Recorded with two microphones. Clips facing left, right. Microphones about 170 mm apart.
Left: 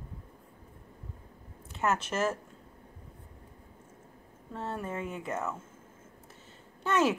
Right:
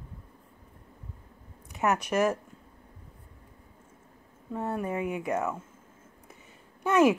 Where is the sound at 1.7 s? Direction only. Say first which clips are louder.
Right 4 dB; 15° right (ahead or behind).